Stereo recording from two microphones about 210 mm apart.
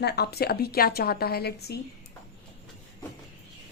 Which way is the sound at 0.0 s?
50° left (ahead or behind).